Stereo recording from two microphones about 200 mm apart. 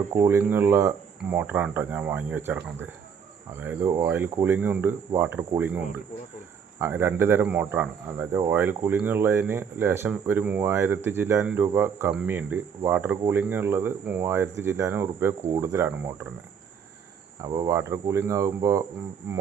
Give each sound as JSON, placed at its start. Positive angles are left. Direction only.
{"t": 0.1, "sound": "cricket", "side_deg": -10}
{"t": 17.4, "sound": "cricket", "side_deg": -20}